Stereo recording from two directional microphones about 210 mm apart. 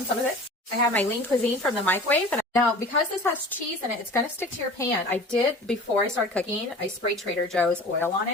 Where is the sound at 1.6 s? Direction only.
10° left (ahead or behind).